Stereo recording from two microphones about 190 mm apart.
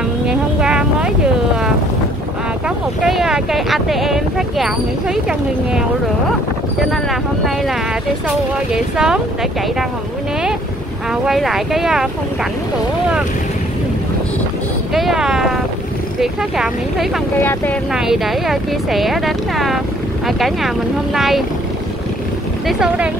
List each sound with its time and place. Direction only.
0.3 s vehicle: 5° right (ahead or behind)
3.0 s speech: centre (ahead or behind)
8.7 s speech: 5° right (ahead or behind)
11.2 s speech: centre (ahead or behind)
15.0 s speech: centre (ahead or behind)
17.4 s speech: 10° left (ahead or behind)
17.9 s speech: centre (ahead or behind)
22.7 s speech: 5° right (ahead or behind)